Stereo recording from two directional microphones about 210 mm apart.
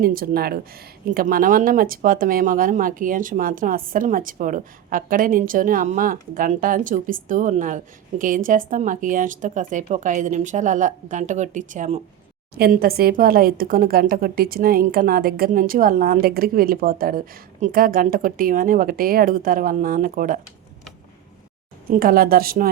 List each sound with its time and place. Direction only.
0.0 s a woman's voice: 45° right (ahead or behind)
21.8 s a woman's voice: 45° right (ahead or behind)